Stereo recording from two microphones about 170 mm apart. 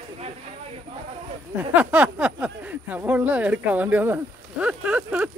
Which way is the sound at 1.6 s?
10° right (ahead or behind).